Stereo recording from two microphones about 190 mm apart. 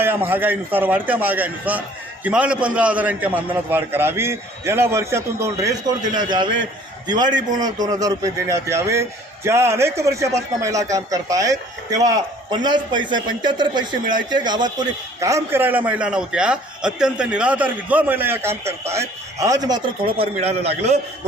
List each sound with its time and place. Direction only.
0.0 s a man's voice: 10° right (ahead or behind); by 21.0 s 35° right (ahead or behind)